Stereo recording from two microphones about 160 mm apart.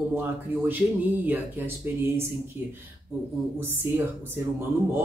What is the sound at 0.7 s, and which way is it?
Speech, 10° right (ahead or behind).